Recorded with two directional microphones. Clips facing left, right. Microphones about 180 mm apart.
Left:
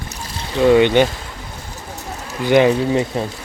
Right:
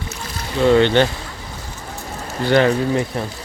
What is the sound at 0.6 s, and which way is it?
Speech, 15° left (ahead or behind).